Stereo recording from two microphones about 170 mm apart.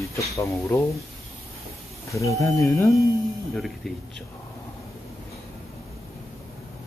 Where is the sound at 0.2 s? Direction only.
15° left (ahead or behind).